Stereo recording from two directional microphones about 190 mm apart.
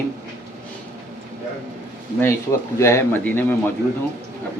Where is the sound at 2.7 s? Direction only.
15° left (ahead or behind).